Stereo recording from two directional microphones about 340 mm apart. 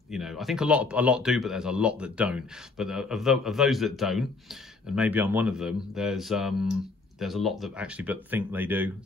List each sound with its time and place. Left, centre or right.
0.1 s speech: centre